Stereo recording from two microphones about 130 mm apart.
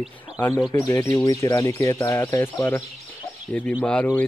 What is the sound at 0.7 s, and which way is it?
Speech, 25° left (ahead or behind).